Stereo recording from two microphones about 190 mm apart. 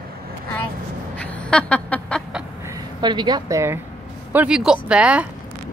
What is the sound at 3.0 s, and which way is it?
A woman's voice, 25° right (ahead or behind).